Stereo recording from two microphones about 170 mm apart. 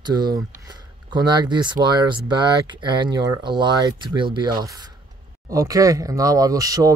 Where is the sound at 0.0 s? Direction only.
25° right (ahead or behind).